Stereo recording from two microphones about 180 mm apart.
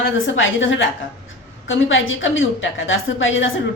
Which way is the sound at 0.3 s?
90° left.